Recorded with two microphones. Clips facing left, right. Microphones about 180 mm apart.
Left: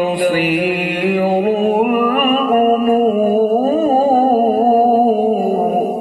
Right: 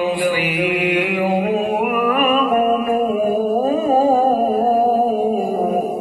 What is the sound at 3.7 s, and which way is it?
Humming, 40° left (ahead or behind).